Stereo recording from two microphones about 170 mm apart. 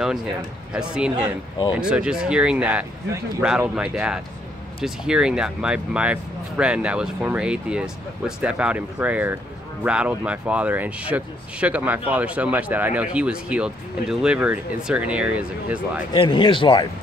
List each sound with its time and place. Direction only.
0.7 s speech: 5° right (ahead or behind)
16.1 s speech: 30° left (ahead or behind)